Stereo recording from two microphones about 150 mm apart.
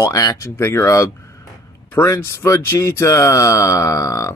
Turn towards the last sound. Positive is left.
turn(degrees=20)  # may be behind; listen again after turning